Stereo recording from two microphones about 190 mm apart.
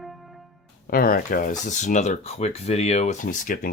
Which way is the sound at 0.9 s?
50° left (ahead or behind).